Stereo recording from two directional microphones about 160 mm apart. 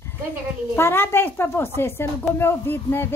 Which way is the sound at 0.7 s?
15° left (ahead or behind).